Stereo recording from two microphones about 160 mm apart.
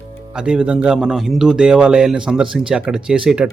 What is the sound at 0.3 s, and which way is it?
Speech, 5° right (ahead or behind).